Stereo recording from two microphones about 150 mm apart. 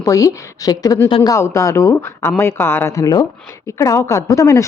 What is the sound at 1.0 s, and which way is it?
Speech, 35° left (ahead or behind).